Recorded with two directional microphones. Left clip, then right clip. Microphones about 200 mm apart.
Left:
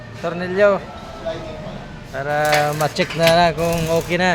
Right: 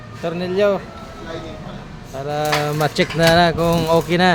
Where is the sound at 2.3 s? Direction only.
25° right (ahead or behind).